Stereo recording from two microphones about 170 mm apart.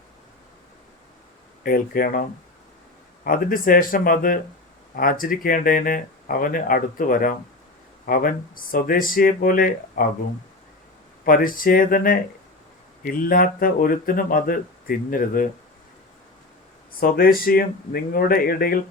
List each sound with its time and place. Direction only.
1.6 s speech: 60° left (ahead or behind)
3.2 s speech: 55° left (ahead or behind)
11.3 s speech: 55° left (ahead or behind)
17.0 s speech: 60° left (ahead or behind)